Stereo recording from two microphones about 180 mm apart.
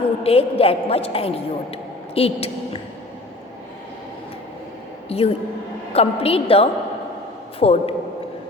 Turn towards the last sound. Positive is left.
turn(degrees=35)  # may be behind; listen again after turning